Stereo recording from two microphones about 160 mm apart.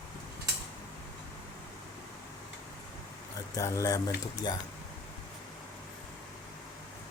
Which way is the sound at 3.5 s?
20° left (ahead or behind).